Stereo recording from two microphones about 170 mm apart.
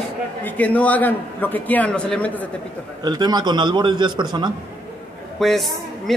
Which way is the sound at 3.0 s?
25° right (ahead or behind).